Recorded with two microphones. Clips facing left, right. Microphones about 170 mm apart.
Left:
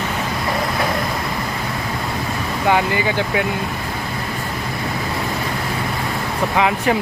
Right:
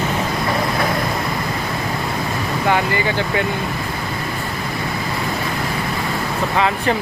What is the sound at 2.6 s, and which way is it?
Speech, 15° left (ahead or behind).